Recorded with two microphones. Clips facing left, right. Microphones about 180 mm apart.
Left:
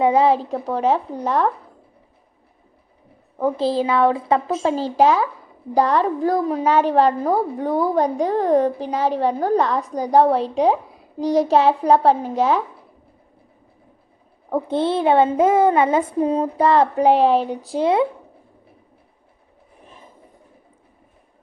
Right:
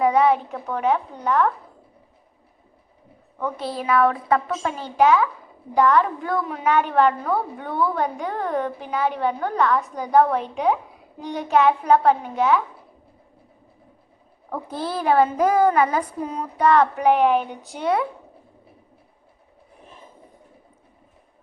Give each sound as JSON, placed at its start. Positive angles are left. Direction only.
{"t": 0.0, "sound": "a woman's voice", "side_deg": 30}
{"t": 3.3, "sound": "a woman's voice", "side_deg": 30}
{"t": 14.5, "sound": "speech", "side_deg": 25}